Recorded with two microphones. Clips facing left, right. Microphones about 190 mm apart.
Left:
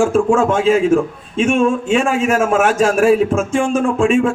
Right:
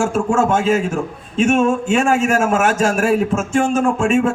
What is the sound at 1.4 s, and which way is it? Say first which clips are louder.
A man's voice: even; 45° right (ahead or behind).